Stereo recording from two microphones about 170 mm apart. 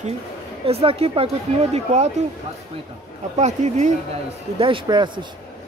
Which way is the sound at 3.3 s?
40° right (ahead or behind).